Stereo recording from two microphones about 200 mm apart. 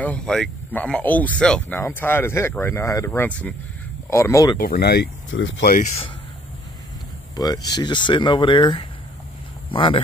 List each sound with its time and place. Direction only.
0.0 s speech: 5° left (ahead or behind)
4.6 s speech: 50° left (ahead or behind); by 5.7 s 70° left (ahead or behind)
7.3 s speech: 20° left (ahead or behind)